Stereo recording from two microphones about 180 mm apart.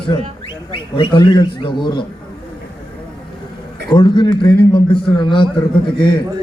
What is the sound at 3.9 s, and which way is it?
A man's voice, 25° left (ahead or behind).